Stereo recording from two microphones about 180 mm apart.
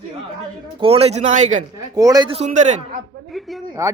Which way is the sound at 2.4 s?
40° right (ahead or behind).